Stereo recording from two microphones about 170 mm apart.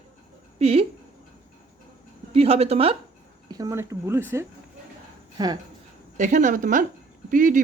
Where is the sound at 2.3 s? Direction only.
35° right (ahead or behind).